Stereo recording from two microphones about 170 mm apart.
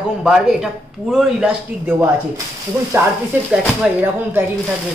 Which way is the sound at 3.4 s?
10° right (ahead or behind).